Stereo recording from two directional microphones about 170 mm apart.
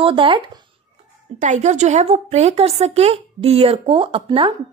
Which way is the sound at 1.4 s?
45° right (ahead or behind).